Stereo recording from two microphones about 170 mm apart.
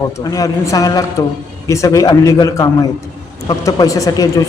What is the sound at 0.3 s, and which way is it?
Speech, 20° left (ahead or behind).